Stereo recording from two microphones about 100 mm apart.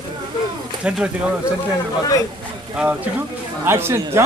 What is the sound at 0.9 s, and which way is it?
Speech, 10° right (ahead or behind).